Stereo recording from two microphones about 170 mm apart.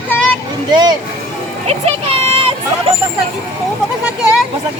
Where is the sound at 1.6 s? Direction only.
35° right (ahead or behind).